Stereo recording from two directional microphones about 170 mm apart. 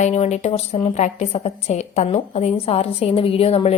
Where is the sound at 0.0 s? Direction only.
40° left (ahead or behind).